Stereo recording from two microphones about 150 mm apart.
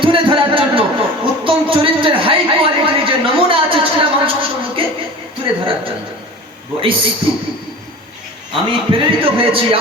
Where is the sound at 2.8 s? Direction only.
35° right (ahead or behind).